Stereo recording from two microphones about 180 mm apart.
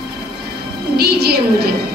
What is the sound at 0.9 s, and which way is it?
Speech, 60° right (ahead or behind).